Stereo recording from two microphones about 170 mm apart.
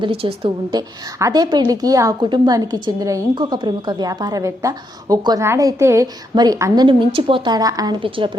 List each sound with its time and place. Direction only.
0.0 s a woman's voice: 35° right (ahead or behind)